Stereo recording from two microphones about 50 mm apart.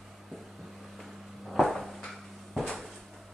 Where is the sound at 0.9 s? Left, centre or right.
Centre.